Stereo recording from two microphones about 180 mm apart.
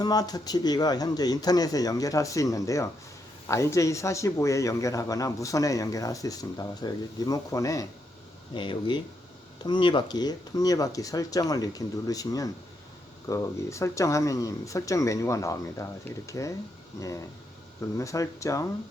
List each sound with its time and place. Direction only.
0.0 s speech: 20° left (ahead or behind)